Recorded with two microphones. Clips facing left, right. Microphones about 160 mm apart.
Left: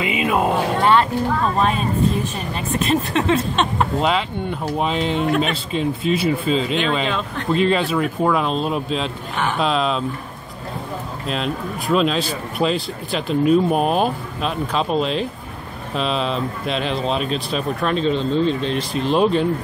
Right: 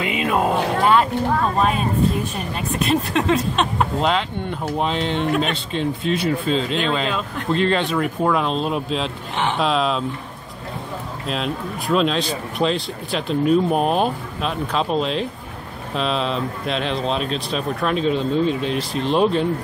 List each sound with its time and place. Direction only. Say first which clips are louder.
0.0 s a sound: left 1 dB; 5° left (ahead or behind)
2.5 s speech: left 1 dB; centre (ahead or behind)
9.3 s speech: right 1 dB; 25° right (ahead or behind)
9.6 s speech: left 1 dB; centre (ahead or behind)
11.2 s speech: left 1 dB; centre (ahead or behind)